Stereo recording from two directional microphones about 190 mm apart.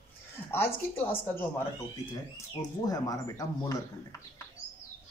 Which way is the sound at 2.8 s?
20° left (ahead or behind).